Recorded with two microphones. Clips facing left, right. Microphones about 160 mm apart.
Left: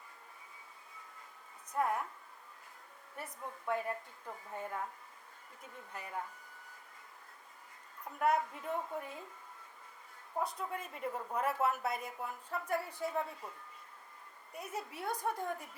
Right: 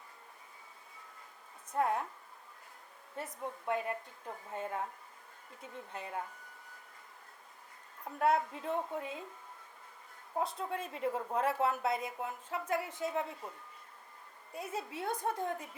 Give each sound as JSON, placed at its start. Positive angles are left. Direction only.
{"t": 1.7, "sound": "speech", "side_deg": -25}
{"t": 3.2, "sound": "speech", "side_deg": -20}
{"t": 5.9, "sound": "speech", "side_deg": -25}
{"t": 8.0, "sound": "speech", "side_deg": -25}
{"t": 10.4, "sound": "speech", "side_deg": -25}
{"t": 14.5, "sound": "speech", "side_deg": -25}